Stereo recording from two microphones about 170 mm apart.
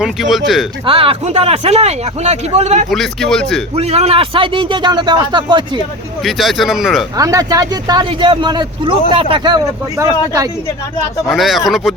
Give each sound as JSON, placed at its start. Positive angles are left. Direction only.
{"t": 0.0, "sound": "speech", "side_deg": 0}
{"t": 0.9, "sound": "speech", "side_deg": -35}
{"t": 2.9, "sound": "speech", "side_deg": 0}
{"t": 3.8, "sound": "a man's voice", "side_deg": -40}
{"t": 6.2, "sound": "speech", "side_deg": 0}
{"t": 7.2, "sound": "a man's voice", "side_deg": -20}
{"t": 11.3, "sound": "speech", "side_deg": 0}